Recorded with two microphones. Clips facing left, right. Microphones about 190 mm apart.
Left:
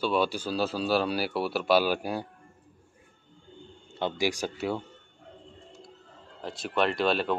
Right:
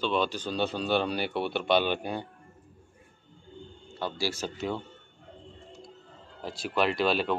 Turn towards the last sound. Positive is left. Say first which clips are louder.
# even
turn(degrees=0)  # may be behind; listen again after turning